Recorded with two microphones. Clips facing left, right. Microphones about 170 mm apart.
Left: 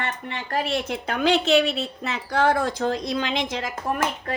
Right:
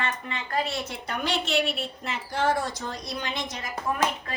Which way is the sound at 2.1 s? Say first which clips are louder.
Left 4 dB; 75° left (ahead or behind).